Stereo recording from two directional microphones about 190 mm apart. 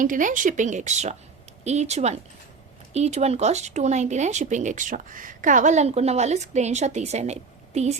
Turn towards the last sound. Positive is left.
turn(degrees=-35)  # may be behind; listen again after turning